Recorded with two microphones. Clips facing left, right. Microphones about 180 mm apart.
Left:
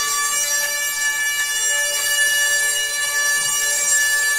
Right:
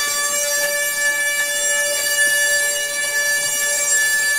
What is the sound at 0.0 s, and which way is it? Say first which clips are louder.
Siren: right 6 dB; 65° right (ahead or behind).